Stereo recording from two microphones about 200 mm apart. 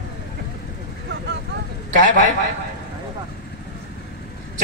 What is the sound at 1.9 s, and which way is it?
Speech, 40° right (ahead or behind).